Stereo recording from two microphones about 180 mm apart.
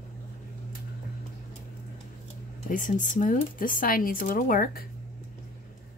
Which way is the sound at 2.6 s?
45° left (ahead or behind).